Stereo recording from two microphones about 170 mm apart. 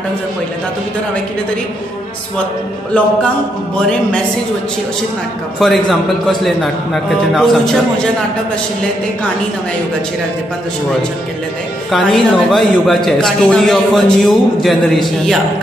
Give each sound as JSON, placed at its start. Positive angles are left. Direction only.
{"t": 5.6, "sound": "a man's voice", "side_deg": 0}
{"t": 11.9, "sound": "a man's voice", "side_deg": 0}